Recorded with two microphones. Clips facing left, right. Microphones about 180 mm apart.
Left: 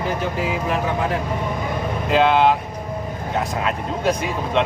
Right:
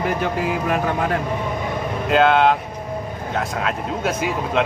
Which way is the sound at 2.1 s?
Centre (ahead or behind).